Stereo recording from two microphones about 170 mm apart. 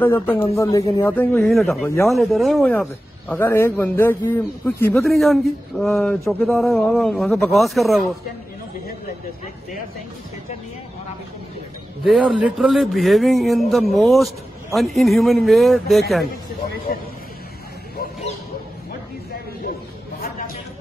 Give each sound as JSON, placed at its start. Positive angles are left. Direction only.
{"t": 0.4, "sound": "speech", "side_deg": 15}
{"t": 1.4, "sound": "a man's voice", "side_deg": 0}
{"t": 5.0, "sound": "a man's voice", "side_deg": 0}
{"t": 12.0, "sound": "a man's voice", "side_deg": 0}
{"t": 20.2, "sound": "a sound", "side_deg": 60}